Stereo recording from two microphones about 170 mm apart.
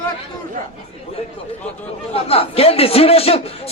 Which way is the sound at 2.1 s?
35° left (ahead or behind).